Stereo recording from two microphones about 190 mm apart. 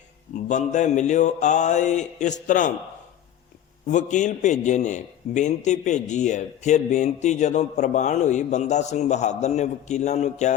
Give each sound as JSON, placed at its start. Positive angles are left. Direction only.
{"t": 0.4, "sound": "a man's voice", "side_deg": 40}
{"t": 3.8, "sound": "a man's voice", "side_deg": 40}